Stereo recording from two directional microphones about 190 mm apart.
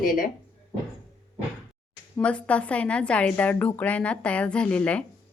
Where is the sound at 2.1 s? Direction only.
5° left (ahead or behind).